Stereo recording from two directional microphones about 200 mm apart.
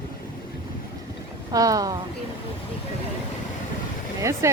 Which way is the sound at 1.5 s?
15° right (ahead or behind).